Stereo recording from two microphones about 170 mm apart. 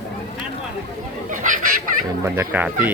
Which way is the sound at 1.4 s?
50° right (ahead or behind).